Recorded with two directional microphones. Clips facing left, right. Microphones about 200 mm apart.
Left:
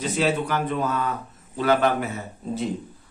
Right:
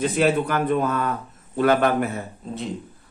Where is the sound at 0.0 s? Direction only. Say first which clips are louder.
Right 3 dB; 55° right (ahead or behind).